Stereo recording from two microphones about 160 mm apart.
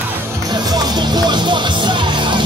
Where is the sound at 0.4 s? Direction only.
25° right (ahead or behind).